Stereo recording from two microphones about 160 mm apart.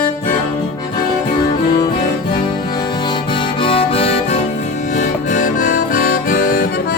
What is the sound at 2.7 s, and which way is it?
Music, 25° left (ahead or behind).